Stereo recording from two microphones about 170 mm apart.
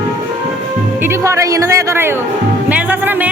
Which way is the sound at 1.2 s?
20° right (ahead or behind).